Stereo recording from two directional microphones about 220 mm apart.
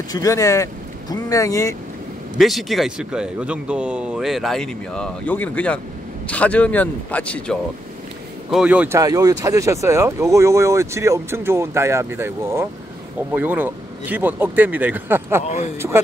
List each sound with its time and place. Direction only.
0.1 s speech: 15° left (ahead or behind)
2.3 s speech: centre (ahead or behind)
15.4 s speech: 30° left (ahead or behind)